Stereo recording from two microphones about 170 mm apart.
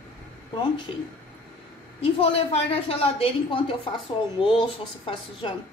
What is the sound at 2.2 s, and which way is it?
A woman's voice, 35° left (ahead or behind).